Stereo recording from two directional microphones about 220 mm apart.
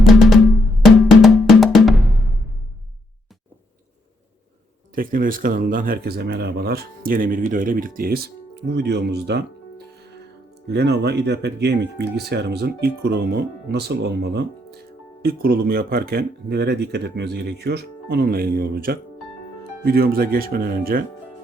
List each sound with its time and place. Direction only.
0.9 s drum: centre (ahead or behind)
4.9 s speech: 40° right (ahead or behind)